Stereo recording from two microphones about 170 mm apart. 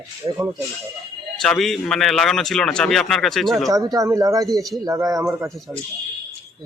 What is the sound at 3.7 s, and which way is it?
Speech, 20° right (ahead or behind).